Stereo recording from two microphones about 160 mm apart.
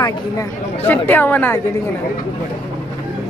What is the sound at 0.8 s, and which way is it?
Speech, 10° left (ahead or behind).